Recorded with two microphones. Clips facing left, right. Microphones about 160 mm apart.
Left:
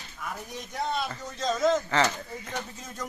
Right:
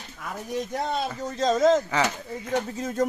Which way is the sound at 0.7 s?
45° right (ahead or behind).